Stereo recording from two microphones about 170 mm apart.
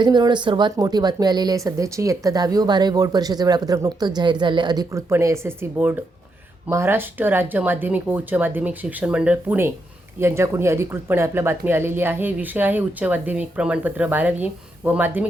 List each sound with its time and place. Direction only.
0.0 s speech: 25° right (ahead or behind); by 15.3 s 10° right (ahead or behind)